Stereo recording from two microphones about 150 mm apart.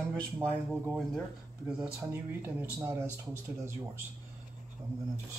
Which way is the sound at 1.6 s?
10° right (ahead or behind).